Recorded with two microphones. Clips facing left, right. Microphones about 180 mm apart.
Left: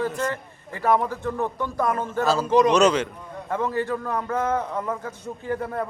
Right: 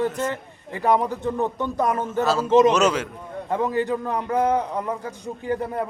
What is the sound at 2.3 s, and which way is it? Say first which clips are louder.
Speech: right 2 dB; centre (ahead or behind).